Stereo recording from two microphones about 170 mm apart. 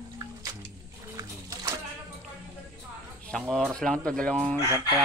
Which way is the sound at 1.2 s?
20° right (ahead or behind).